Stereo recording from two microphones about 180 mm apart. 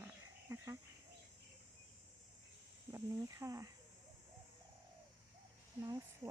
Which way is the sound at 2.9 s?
20° right (ahead or behind).